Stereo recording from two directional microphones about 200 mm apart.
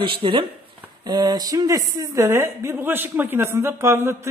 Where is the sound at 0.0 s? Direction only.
25° right (ahead or behind).